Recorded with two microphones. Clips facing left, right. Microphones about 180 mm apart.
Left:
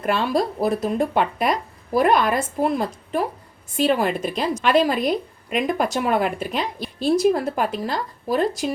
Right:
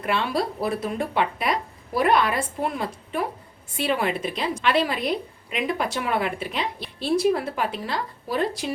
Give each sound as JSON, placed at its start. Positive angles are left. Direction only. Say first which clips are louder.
{"t": 0.0, "sound": "a woman's voice", "louder": "left 4 dB", "side_deg": 45}